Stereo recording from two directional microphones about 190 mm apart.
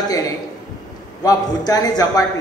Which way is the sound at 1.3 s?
20° left (ahead or behind).